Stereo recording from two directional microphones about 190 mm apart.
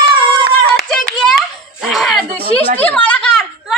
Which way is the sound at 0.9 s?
Centre (ahead or behind).